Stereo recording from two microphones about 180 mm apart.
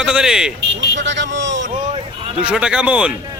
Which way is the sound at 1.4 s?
80° right.